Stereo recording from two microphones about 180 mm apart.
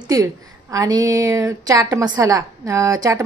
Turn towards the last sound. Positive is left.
turn(degrees=-20)  # may be behind; listen again after turning